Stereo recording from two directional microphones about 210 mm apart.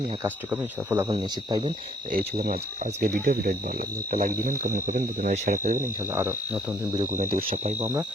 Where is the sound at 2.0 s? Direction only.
45° right (ahead or behind).